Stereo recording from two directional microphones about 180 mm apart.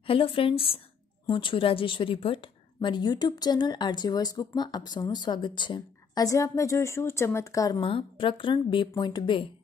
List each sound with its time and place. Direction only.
0.0 s a woman's voice: 30° left (ahead or behind)